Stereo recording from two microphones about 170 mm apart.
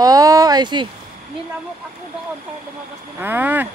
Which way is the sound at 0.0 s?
20° right (ahead or behind).